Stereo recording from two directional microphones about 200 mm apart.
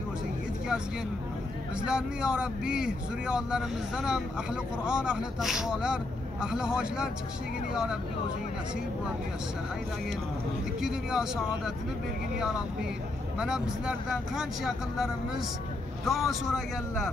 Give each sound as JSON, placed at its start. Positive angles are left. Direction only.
{"t": 1.9, "sound": "speech", "side_deg": -5}
{"t": 10.8, "sound": "speech", "side_deg": -5}